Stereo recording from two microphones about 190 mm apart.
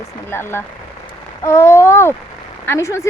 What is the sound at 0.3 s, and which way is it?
A woman's voice, 10° left (ahead or behind).